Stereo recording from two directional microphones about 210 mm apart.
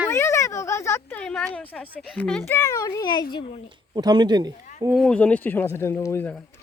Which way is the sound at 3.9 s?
20° right (ahead or behind).